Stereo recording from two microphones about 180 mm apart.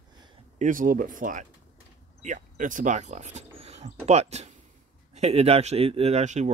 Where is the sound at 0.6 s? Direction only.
50° right (ahead or behind).